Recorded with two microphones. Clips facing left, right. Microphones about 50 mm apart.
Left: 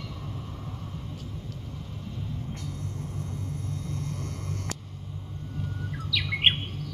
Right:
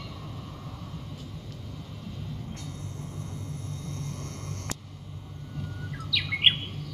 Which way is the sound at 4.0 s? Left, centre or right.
Right.